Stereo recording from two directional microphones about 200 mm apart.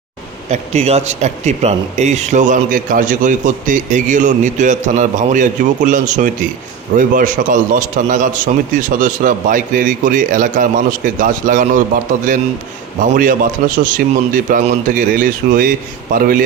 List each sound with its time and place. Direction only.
0.5 s speech: 35° right (ahead or behind)
13.0 s a man's voice: 40° right (ahead or behind)